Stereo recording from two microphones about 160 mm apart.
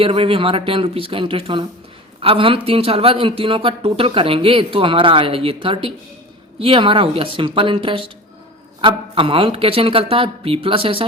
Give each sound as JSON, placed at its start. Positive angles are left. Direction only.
{"t": 0.0, "sound": "speech", "side_deg": -35}